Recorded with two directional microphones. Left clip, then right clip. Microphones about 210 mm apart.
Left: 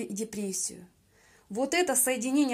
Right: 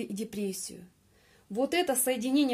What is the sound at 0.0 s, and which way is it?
Speech, 25° right (ahead or behind).